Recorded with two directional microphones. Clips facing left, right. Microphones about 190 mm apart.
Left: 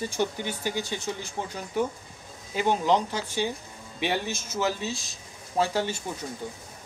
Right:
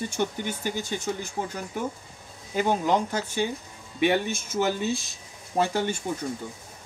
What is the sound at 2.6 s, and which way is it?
Speech, 50° right (ahead or behind).